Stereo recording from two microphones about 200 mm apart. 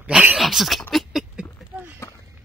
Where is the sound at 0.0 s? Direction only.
5° right (ahead or behind).